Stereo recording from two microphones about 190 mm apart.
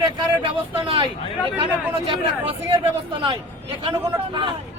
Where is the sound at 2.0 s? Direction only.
25° right (ahead or behind).